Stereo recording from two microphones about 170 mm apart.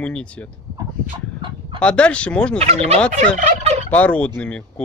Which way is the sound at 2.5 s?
40° right (ahead or behind).